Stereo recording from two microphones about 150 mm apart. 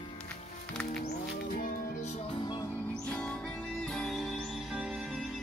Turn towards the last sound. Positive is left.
turn(degrees=-5)  # may be behind; listen again after turning